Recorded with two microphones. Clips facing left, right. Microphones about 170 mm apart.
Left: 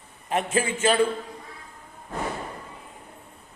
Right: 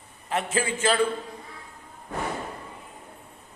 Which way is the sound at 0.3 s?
20° left (ahead or behind).